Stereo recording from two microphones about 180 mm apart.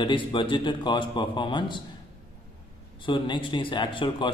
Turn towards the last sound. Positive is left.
turn(degrees=25)  # may be behind; listen again after turning